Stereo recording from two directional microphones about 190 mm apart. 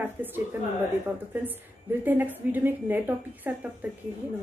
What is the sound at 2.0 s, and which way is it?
A woman's voice, 10° right (ahead or behind).